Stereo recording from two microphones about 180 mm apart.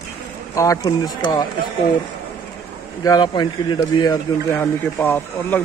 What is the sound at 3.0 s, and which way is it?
Speech, 25° left (ahead or behind).